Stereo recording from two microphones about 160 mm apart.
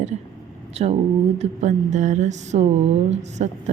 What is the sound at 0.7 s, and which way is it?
A woman's voice, 40° right (ahead or behind).